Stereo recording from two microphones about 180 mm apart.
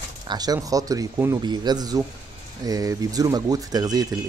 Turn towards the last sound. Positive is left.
turn(degrees=-20)  # may be behind; listen again after turning